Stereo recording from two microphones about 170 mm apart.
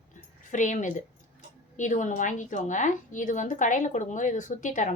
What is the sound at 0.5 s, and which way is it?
A woman's voice, 50° left (ahead or behind).